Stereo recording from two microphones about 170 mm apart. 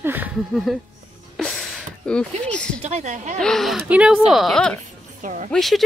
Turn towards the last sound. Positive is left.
turn(degrees=0)  # may be behind; listen again after turning